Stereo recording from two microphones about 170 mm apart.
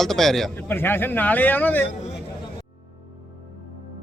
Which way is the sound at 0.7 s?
15° left (ahead or behind).